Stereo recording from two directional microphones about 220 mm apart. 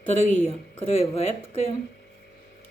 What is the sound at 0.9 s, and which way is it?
Speech, 25° left (ahead or behind).